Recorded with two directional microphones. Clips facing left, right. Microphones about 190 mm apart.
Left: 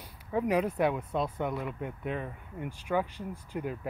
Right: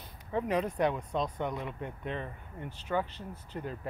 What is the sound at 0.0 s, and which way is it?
Speech, 10° left (ahead or behind).